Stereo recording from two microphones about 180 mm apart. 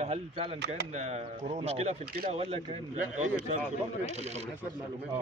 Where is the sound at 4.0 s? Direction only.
40° right (ahead or behind).